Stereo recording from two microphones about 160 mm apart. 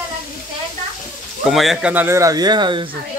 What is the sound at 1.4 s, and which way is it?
Speech, centre (ahead or behind).